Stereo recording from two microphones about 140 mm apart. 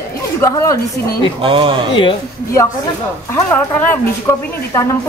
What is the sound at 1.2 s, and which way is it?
Speech, 40° right (ahead or behind).